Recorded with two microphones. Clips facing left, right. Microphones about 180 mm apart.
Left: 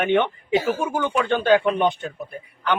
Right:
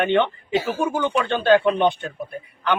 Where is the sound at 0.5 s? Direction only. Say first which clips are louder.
Left 3 dB; 45° left (ahead or behind).